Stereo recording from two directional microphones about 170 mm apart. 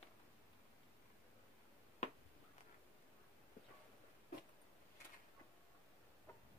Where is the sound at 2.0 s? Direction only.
45° left (ahead or behind).